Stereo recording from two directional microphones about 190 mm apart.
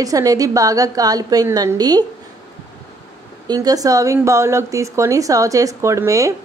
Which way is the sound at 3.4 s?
20° right (ahead or behind).